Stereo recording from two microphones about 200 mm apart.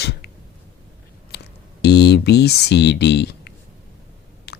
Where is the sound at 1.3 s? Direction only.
55° left (ahead or behind).